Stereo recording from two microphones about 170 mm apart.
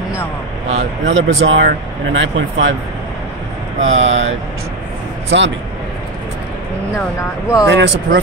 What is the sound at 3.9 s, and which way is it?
Speech, 90° right.